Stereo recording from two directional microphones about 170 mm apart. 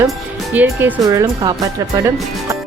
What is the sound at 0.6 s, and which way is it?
A woman's voice, 15° right (ahead or behind).